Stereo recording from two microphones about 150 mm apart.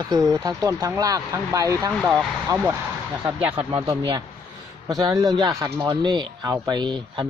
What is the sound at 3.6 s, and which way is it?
Speech, 35° right (ahead or behind).